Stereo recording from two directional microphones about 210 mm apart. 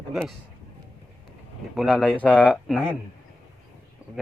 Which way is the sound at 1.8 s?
Centre (ahead or behind).